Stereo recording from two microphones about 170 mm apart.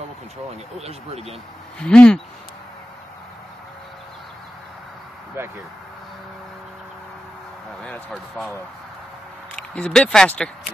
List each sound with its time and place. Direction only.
0.7 s speech: 40° right (ahead or behind)
1.8 s speech: 5° left (ahead or behind)
7.8 s speech: 5° left (ahead or behind)
9.6 s speech: 5° left (ahead or behind)